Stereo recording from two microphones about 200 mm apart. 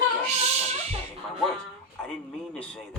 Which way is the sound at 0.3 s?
35° right (ahead or behind).